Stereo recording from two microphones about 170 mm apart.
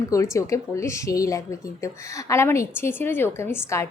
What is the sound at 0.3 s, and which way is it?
A woman's voice, 20° left (ahead or behind).